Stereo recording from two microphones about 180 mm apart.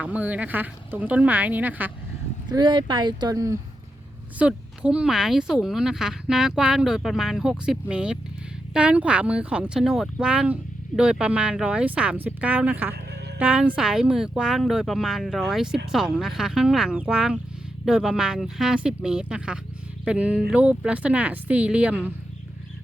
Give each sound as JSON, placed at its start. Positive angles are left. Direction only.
{"t": 0.0, "sound": "speech", "side_deg": -10}
{"t": 2.5, "sound": "speech", "side_deg": -25}
{"t": 4.4, "sound": "speech", "side_deg": -5}